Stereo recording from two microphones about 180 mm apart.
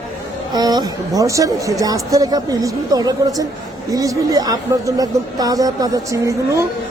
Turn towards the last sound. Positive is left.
turn(degrees=-15)  # may be behind; listen again after turning